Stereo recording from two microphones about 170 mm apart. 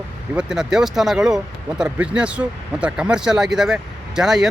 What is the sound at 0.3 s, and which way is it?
Speech, 5° right (ahead or behind).